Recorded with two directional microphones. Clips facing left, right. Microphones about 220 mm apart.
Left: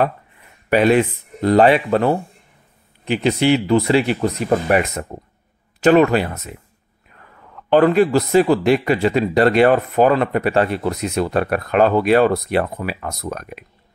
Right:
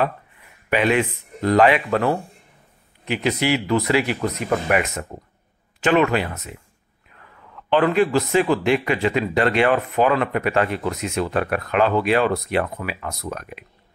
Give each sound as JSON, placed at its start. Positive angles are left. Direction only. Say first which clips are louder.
{"t": 0.7, "sound": "speech", "louder": "left 5 dB", "side_deg": 40}
{"t": 7.7, "sound": "speech", "louder": "left 4 dB", "side_deg": 40}